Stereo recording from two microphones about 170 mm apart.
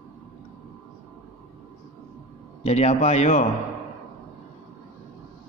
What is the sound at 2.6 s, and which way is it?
Speech, 40° left (ahead or behind).